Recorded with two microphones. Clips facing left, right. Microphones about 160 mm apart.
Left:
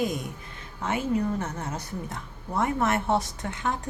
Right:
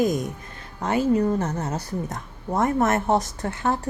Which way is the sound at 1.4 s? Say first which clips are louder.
Right 6 dB; 35° right (ahead or behind).